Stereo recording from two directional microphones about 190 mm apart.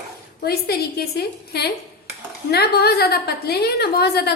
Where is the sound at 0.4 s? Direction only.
55° left (ahead or behind).